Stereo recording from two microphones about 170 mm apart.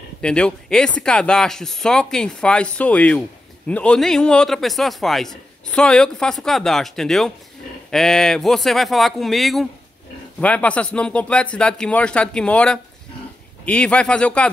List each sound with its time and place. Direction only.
0.2 s speech: 5° left (ahead or behind)